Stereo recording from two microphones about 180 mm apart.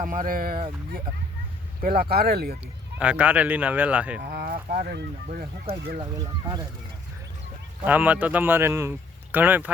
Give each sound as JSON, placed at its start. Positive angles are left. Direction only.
{"t": 0.0, "sound": "speech", "side_deg": -45}
{"t": 1.8, "sound": "speech", "side_deg": -55}
{"t": 3.0, "sound": "speech", "side_deg": -5}
{"t": 4.2, "sound": "speech", "side_deg": -60}
{"t": 6.0, "sound": "speech", "side_deg": -20}
{"t": 7.9, "sound": "speech", "side_deg": -10}